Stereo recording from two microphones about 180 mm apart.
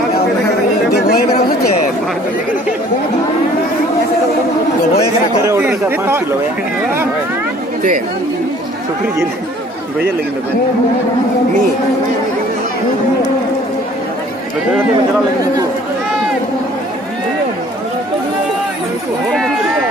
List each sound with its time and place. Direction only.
0.9 s chatter: 55° left (ahead or behind)
5.4 s chatter: 15° right (ahead or behind)